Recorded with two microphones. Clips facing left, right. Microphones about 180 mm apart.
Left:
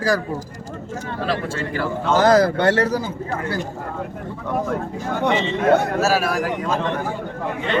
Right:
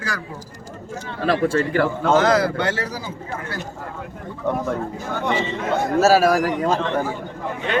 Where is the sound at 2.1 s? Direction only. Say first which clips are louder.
Left 4 dB; 40° left (ahead or behind).